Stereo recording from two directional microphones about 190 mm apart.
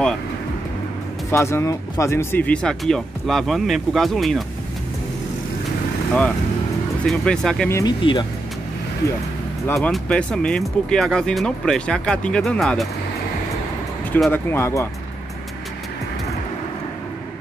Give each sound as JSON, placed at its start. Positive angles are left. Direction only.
{"t": 1.3, "sound": "speech", "side_deg": 15}
{"t": 7.1, "sound": "speech", "side_deg": 5}
{"t": 7.7, "sound": "speech", "side_deg": 25}
{"t": 9.8, "sound": "speech", "side_deg": 5}
{"t": 14.1, "sound": "speech", "side_deg": 10}